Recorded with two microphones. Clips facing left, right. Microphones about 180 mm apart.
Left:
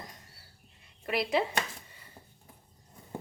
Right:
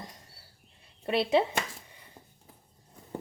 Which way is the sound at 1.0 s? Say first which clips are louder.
Right 4 dB; 30° right (ahead or behind).